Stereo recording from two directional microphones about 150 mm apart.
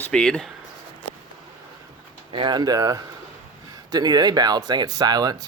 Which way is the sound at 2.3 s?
30° right (ahead or behind).